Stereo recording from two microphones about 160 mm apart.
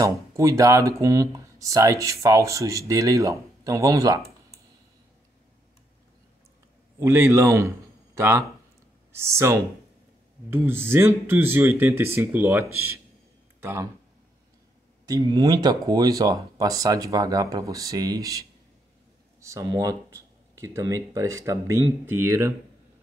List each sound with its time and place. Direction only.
0.0 s speech: 20° right (ahead or behind)
7.0 s a man's voice: 15° right (ahead or behind)
15.0 s speech: 25° right (ahead or behind)